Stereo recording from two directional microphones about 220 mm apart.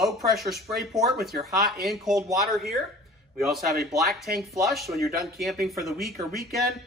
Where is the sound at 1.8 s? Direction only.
Centre (ahead or behind).